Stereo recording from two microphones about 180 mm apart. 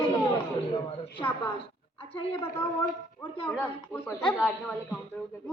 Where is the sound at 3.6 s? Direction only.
10° left (ahead or behind).